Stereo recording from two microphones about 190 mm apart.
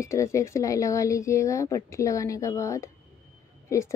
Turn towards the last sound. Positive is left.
turn(degrees=15)  # may be behind; listen again after turning